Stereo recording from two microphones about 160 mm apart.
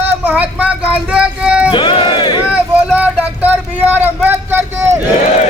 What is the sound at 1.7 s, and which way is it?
Crowd, 30° left (ahead or behind).